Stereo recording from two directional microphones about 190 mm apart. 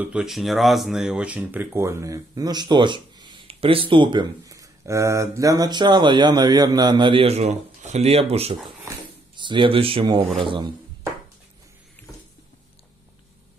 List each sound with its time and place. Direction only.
0.0 s speech: 5° right (ahead or behind); by 10.7 s 25° right (ahead or behind)